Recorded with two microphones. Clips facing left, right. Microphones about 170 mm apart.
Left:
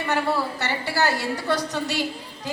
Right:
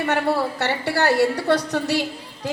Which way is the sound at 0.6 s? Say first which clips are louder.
Right 3 dB; 65° right (ahead or behind).